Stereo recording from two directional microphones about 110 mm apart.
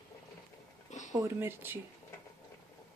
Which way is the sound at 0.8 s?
90° left.